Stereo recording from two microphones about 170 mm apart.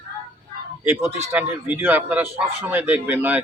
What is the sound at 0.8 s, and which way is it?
Speech, 10° right (ahead or behind).